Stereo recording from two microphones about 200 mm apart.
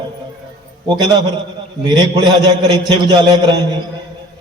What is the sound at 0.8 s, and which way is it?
A man's voice, 20° right (ahead or behind).